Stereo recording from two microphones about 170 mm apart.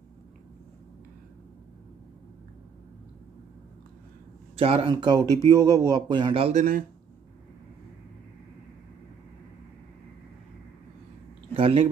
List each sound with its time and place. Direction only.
4.6 s a man's voice: 35° right (ahead or behind)
11.5 s speech: 35° right (ahead or behind)